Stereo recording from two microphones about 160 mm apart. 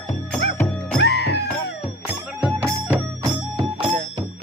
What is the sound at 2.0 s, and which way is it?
Music, 5° right (ahead or behind).